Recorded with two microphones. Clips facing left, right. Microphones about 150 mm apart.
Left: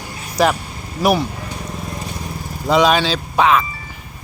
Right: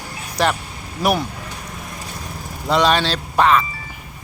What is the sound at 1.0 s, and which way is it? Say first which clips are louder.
Speech: left 3 dB; 5° left (ahead or behind).